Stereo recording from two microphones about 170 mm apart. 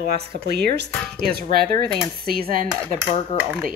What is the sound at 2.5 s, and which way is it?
Speech, 50° right (ahead or behind).